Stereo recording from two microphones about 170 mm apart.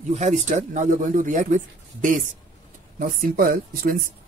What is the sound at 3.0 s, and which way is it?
Speech, 55° right (ahead or behind).